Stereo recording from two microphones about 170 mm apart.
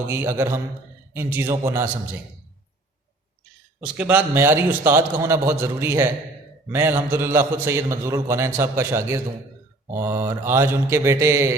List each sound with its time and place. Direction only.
0.1 s a man's voice: 15° right (ahead or behind)
3.8 s a man's voice: 10° right (ahead or behind)